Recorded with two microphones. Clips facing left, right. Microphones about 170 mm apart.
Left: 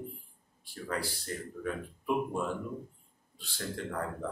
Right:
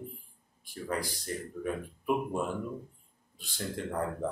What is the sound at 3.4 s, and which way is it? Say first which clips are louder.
Speech: right 2 dB; 15° right (ahead or behind).